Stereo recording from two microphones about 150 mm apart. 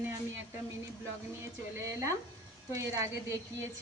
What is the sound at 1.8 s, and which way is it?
Speech, 20° right (ahead or behind).